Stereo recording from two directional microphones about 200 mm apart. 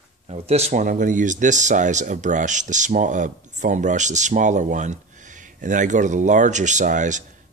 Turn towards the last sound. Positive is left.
turn(degrees=-40)  # may be behind; listen again after turning